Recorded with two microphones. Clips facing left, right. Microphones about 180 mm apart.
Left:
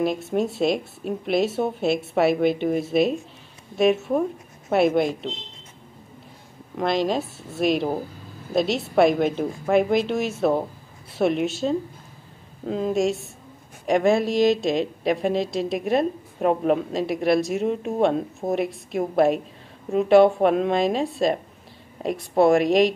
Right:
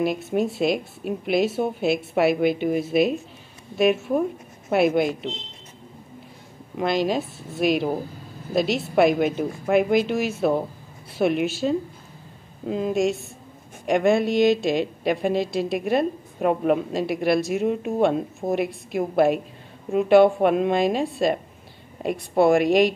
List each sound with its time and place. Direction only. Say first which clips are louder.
0.6 s a woman's voice: even; 5° right (ahead or behind)
6.8 s a woman's voice: even; centre (ahead or behind)
18.4 s a woman's voice: even; 20° left (ahead or behind)
18.9 s a woman's voice: even; centre (ahead or behind)